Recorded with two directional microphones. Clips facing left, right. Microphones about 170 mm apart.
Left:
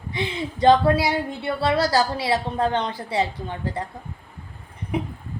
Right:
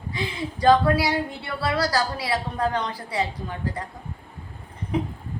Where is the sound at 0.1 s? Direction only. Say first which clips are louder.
Left 2 dB; 25° left (ahead or behind).